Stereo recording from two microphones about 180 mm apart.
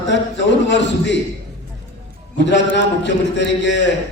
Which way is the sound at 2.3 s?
75° left (ahead or behind).